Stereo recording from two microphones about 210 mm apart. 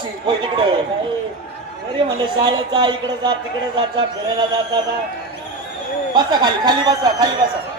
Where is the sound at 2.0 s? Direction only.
25° right (ahead or behind).